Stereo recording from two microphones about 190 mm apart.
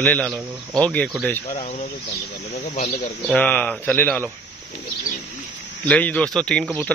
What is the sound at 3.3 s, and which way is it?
Speech, 5° left (ahead or behind).